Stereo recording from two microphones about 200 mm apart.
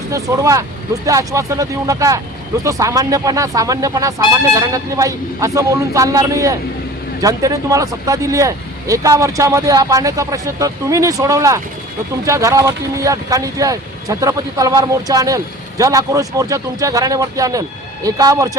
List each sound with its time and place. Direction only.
0.1 s speech: 15° right (ahead or behind)